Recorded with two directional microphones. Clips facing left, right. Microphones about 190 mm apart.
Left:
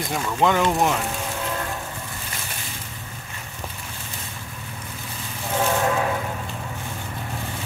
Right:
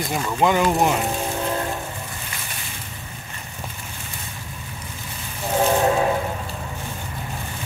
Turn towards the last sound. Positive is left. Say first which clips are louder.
# right 3 dB
turn(degrees=-25)  # may be behind; listen again after turning